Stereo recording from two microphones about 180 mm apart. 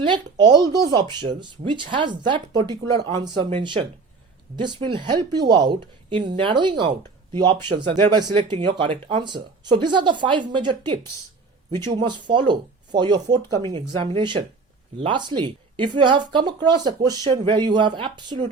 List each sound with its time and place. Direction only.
0.0 s speech: 25° right (ahead or behind)